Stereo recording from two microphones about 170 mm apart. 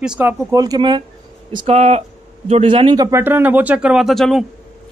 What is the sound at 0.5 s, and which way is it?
Speech, 20° right (ahead or behind).